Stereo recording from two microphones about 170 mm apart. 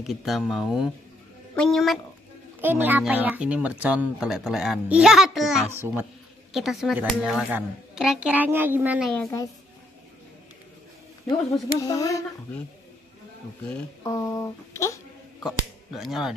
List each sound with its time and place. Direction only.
0.0 s a child's voice: centre (ahead or behind)
2.6 s speech: 10° right (ahead or behind)
5.7 s speech: 15° right (ahead or behind)
6.5 s a child's voice: centre (ahead or behind)
9.1 s speech: 5° left (ahead or behind)
11.9 s speech: 20° left (ahead or behind)
13.7 s speech: 15° left (ahead or behind)
15.4 s speech: centre (ahead or behind)